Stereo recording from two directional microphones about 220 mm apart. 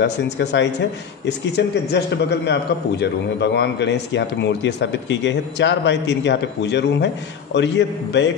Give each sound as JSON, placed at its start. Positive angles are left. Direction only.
{"t": 0.0, "sound": "a man's voice", "side_deg": 50}